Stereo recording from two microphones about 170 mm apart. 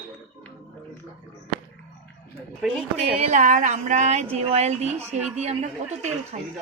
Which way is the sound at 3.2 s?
45° right (ahead or behind).